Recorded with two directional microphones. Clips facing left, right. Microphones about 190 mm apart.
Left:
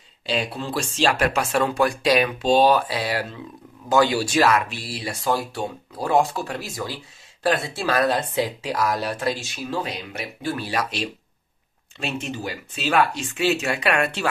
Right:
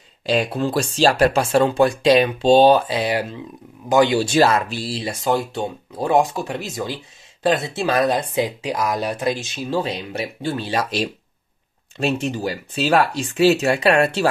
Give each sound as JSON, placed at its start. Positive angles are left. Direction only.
{"t": 0.3, "sound": "speech", "side_deg": -45}